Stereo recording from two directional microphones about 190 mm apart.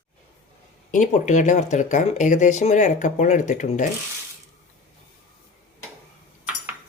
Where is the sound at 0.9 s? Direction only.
40° left (ahead or behind).